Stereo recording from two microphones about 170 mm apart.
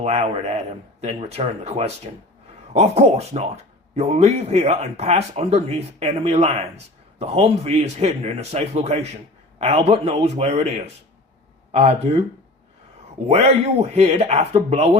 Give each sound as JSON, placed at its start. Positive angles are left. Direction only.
{"t": 0.0, "sound": "speech", "side_deg": -40}
{"t": 13.2, "sound": "speech", "side_deg": -40}